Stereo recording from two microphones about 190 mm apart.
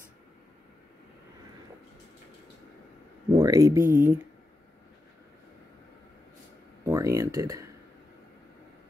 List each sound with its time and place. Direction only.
3.3 s speech: 20° right (ahead or behind)
6.8 s speech: 15° right (ahead or behind)